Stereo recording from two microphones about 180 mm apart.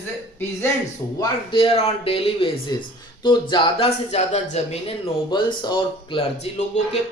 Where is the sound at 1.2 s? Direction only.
30° left (ahead or behind).